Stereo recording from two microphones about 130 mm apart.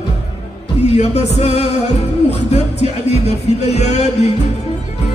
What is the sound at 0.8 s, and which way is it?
Music, 55° left (ahead or behind).